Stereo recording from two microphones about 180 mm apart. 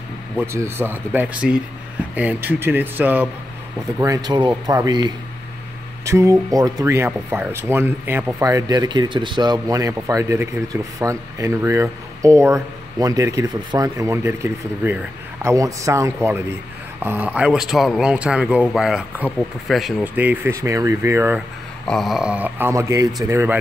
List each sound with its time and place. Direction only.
0.4 s speech: 15° right (ahead or behind)
4.0 s speech: 20° right (ahead or behind)
21.8 s speech: centre (ahead or behind)